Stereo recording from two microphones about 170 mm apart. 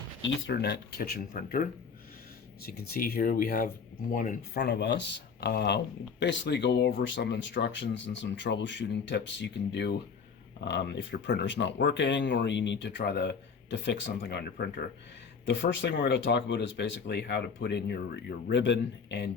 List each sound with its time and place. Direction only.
0.2 s speech: 90° left; by 1.6 s 60° left (ahead or behind)
2.6 s speech: 65° left (ahead or behind)
4.5 s speech: 75° left (ahead or behind)